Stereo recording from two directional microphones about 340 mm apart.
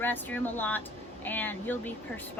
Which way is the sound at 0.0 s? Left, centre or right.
Centre.